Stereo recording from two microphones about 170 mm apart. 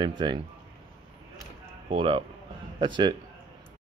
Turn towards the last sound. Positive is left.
turn(degrees=-25)  # may be behind; listen again after turning